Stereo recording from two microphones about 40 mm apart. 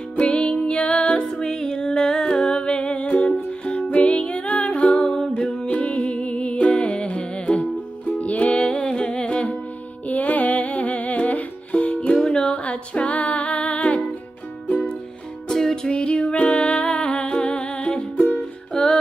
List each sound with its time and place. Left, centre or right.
0.2 s music: left
1.2 s music: centre
4.9 s music: centre
8.0 s music: left
8.5 s humming: left
10.0 s music: left
12.1 s music: left
12.6 s music: left
15.5 s music: centre
18.7 s music: centre